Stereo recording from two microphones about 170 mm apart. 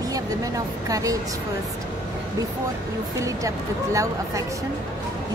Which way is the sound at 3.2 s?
20° right (ahead or behind).